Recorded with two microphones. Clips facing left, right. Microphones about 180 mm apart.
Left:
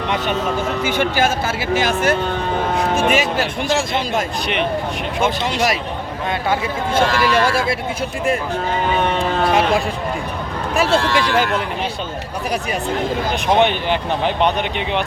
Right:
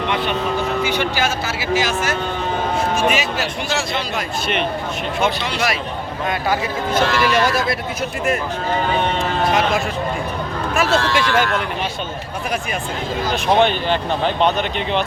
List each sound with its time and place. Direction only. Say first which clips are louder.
0.9 s speech: left 2 dB; 50° left (ahead or behind)
5.2 s speech: left 2 dB; 40° left (ahead or behind)
6.5 s speech: left 1 dB; 30° left (ahead or behind)
9.4 s speech: left 2 dB; 30° left (ahead or behind)
10.8 s speech: left 1 dB; 15° left (ahead or behind)
13.6 s speech: even; 15° left (ahead or behind)